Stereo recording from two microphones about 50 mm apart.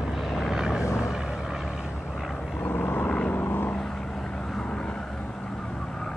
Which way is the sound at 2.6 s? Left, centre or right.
Left.